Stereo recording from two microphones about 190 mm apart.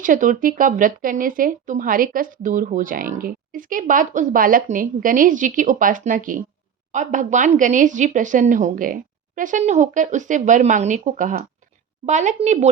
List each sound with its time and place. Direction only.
0.0 s speech: 45° right (ahead or behind)